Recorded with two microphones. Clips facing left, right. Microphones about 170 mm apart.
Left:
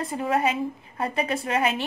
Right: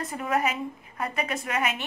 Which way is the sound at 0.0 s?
30° left (ahead or behind).